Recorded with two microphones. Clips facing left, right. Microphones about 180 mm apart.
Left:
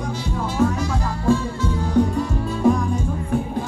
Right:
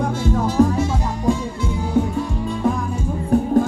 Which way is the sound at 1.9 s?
5° right (ahead or behind).